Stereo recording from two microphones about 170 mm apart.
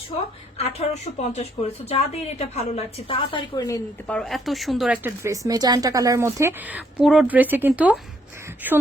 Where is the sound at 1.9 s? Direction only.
40° left (ahead or behind); by 3.8 s 20° left (ahead or behind).